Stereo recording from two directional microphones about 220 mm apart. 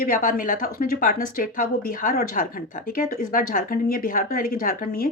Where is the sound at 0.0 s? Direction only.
40° left (ahead or behind).